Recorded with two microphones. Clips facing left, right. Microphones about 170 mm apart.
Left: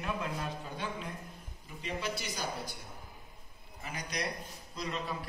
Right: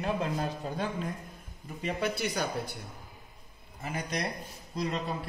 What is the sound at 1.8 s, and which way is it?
Speech, 60° right (ahead or behind).